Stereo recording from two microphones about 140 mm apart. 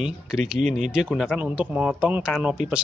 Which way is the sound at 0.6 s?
60° right (ahead or behind).